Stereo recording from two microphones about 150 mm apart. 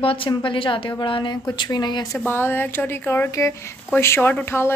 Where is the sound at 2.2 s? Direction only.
15° left (ahead or behind).